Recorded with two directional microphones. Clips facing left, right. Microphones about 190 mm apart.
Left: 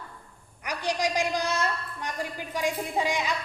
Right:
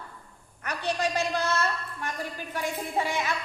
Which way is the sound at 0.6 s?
15° left (ahead or behind).